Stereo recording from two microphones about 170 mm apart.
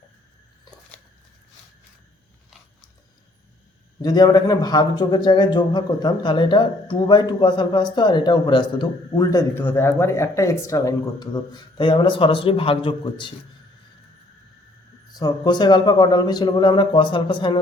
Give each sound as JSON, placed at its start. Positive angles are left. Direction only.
{"t": 4.0, "sound": "speech", "side_deg": 25}
{"t": 15.1, "sound": "speech", "side_deg": 25}